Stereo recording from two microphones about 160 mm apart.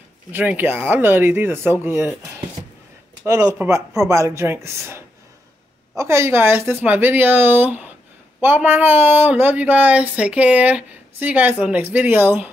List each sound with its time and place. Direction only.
0.3 s speech: 10° right (ahead or behind)
3.3 s speech: 20° right (ahead or behind)